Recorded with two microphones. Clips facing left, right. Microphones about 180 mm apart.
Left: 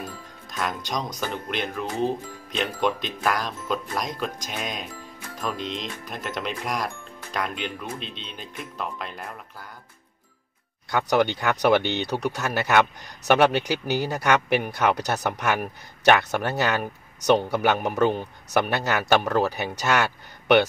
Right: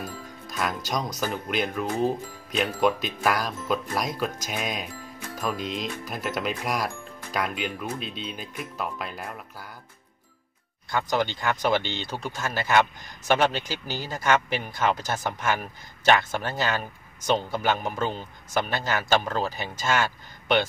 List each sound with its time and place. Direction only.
0.5 s speech: 5° right (ahead or behind)
10.9 s speech: 65° left (ahead or behind)